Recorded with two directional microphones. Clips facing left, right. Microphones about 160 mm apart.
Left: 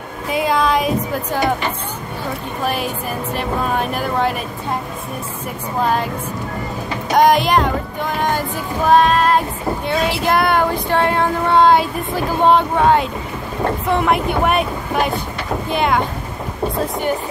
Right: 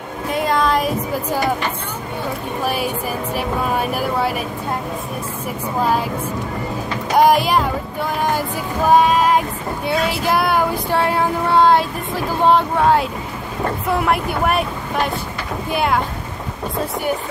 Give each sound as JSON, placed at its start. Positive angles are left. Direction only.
{"t": 0.3, "sound": "music", "side_deg": 5}
{"t": 2.6, "sound": "speech", "side_deg": -5}
{"t": 7.2, "sound": "child singing", "side_deg": -5}
{"t": 8.2, "sound": "speech", "side_deg": -5}
{"t": 9.8, "sound": "child singing", "side_deg": -5}
{"t": 15.7, "sound": "child singing", "side_deg": -5}